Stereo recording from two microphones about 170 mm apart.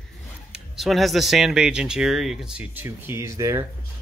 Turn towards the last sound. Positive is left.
turn(degrees=-15)  # may be behind; listen again after turning